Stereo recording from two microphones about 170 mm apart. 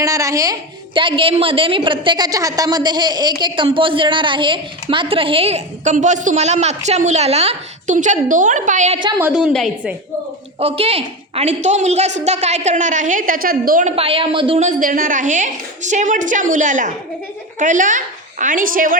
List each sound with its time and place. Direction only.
0.0 s a woman's voice: 20° right (ahead or behind); by 9.0 s 45° right (ahead or behind)
9.1 s a woman's voice: 10° right (ahead or behind)
10.6 s a woman's voice: 35° right (ahead or behind); by 13.9 s 55° right (ahead or behind)
13.9 s a woman's voice: 35° right (ahead or behind); by 18.9 s 55° right (ahead or behind)